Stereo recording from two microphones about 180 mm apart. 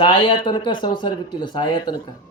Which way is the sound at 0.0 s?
25° left (ahead or behind).